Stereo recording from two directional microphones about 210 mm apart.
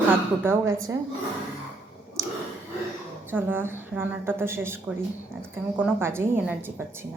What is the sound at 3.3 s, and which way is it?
A woman's voice, 10° right (ahead or behind).